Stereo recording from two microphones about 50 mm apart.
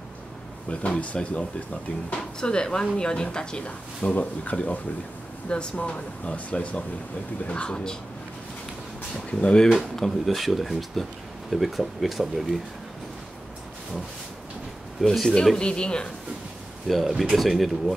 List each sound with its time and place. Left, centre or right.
0.7 s speech: left
9.1 s speech: left
9.8 s speech: centre
15.0 s speech: centre
15.6 s speech: centre
16.8 s speech: centre